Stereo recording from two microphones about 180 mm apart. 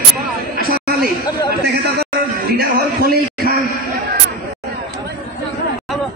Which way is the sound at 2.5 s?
55° right (ahead or behind).